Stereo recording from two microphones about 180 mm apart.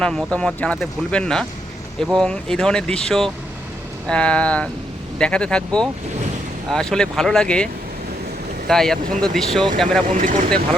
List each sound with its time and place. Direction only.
0.0 s speech: 5° left (ahead or behind)
10.2 s speech: 45° right (ahead or behind)